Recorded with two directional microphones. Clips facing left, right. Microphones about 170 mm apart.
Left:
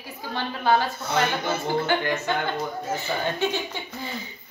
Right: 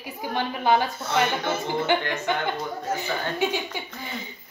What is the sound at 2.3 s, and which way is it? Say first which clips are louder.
A woman's voice: even; 15° right (ahead or behind).